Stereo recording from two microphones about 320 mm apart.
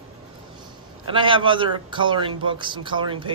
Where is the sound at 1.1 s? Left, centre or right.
Centre.